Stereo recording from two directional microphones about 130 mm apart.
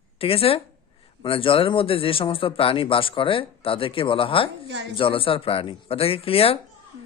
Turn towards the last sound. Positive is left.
turn(degrees=50)  # may be behind; listen again after turning